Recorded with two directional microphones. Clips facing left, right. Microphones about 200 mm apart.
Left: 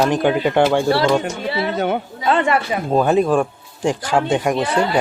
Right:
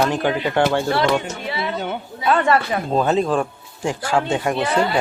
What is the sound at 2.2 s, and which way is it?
Speech, 20° left (ahead or behind).